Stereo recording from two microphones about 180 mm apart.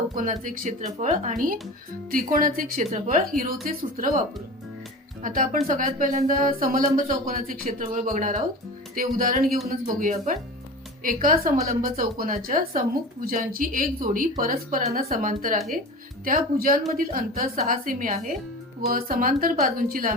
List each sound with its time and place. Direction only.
0.2 s speech: 50° right (ahead or behind)
5.2 s speech: 50° right (ahead or behind)